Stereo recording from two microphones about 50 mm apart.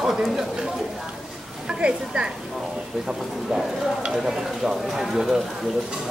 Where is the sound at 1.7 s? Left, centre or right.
Right.